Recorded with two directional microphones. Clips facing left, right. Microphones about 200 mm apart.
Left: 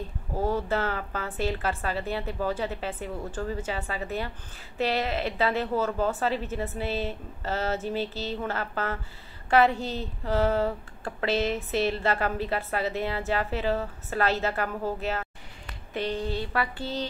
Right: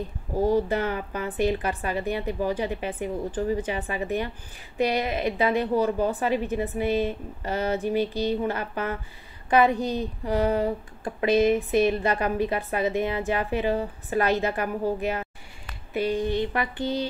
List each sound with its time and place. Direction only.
0.4 s a woman's voice: 15° right (ahead or behind)